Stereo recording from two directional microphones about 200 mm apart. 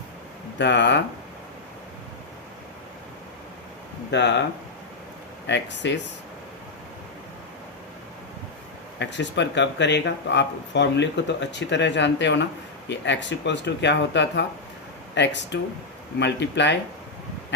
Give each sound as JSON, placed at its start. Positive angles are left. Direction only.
{"t": 0.6, "sound": "speech", "side_deg": 60}
{"t": 4.1, "sound": "speech", "side_deg": 60}
{"t": 5.5, "sound": "speech", "side_deg": 60}
{"t": 9.0, "sound": "speech", "side_deg": 60}